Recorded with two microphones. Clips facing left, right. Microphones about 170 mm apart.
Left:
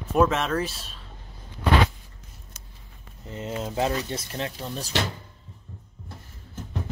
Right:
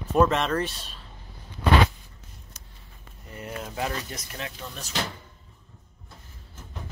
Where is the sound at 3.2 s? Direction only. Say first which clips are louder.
Left 5 dB; 20° left (ahead or behind).